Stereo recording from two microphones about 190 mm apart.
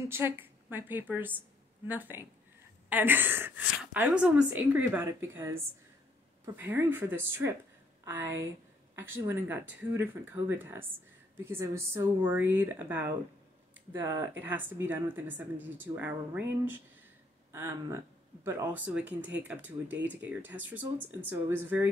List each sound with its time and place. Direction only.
0.1 s speech: 10° right (ahead or behind)